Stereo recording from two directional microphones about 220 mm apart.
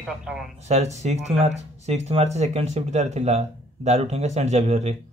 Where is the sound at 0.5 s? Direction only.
30° right (ahead or behind).